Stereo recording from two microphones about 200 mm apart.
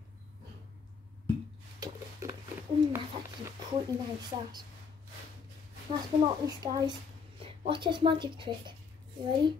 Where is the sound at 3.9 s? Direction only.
15° right (ahead or behind).